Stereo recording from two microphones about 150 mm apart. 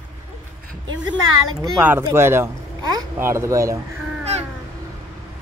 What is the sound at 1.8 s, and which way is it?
Speech, 15° right (ahead or behind).